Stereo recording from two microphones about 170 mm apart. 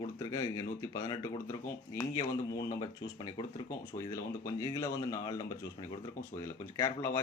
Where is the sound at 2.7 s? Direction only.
20° left (ahead or behind).